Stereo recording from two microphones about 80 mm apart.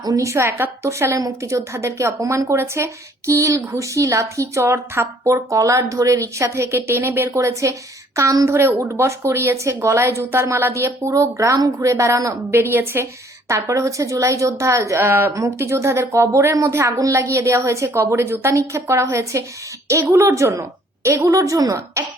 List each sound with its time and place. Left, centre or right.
0.0 s a woman's voice: right
0.3 s speech: right
8.4 s speech: right
12.5 s speech: right